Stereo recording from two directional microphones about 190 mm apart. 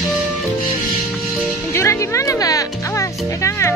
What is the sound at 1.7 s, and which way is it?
Music, 15° left (ahead or behind).